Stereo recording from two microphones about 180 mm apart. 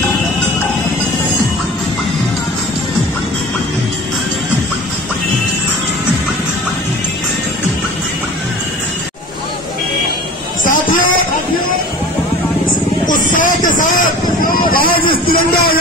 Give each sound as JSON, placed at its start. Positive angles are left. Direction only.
{"t": 10.6, "sound": "music", "side_deg": 50}
{"t": 13.0, "sound": "vehicle", "side_deg": 50}
{"t": 15.0, "sound": "a sound", "side_deg": 55}